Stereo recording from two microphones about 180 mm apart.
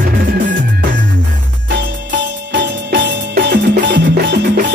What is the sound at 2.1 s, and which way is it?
Music, 85° right.